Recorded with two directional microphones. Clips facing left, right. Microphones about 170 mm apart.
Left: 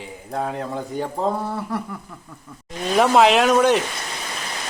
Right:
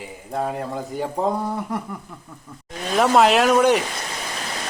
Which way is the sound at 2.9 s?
Centre (ahead or behind).